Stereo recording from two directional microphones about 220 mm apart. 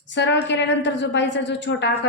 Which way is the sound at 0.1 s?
55° left (ahead or behind).